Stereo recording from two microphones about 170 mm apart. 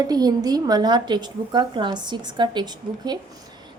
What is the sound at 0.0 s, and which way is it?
A woman's voice, 20° right (ahead or behind).